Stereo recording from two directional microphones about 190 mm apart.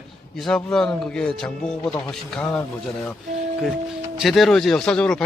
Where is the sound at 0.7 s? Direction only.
5° left (ahead or behind).